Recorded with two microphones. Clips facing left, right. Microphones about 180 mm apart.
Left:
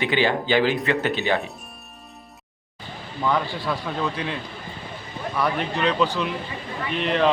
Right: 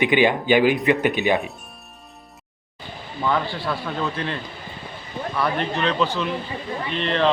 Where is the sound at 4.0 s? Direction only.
5° left (ahead or behind).